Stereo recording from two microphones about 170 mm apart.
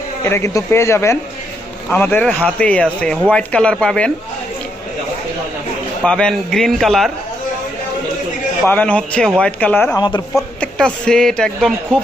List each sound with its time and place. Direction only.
0.3 s a man's voice: 15° left (ahead or behind)
6.1 s speech: 5° left (ahead or behind)
8.6 s a man's voice: 10° left (ahead or behind)
10.0 s speech: 25° left (ahead or behind)
10.3 s speech: 5° left (ahead or behind)